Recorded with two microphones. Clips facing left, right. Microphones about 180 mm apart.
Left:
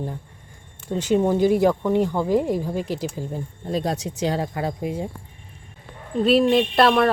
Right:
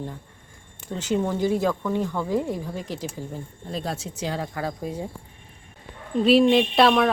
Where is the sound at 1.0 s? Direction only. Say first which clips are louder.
Left 5 dB; 15° left (ahead or behind).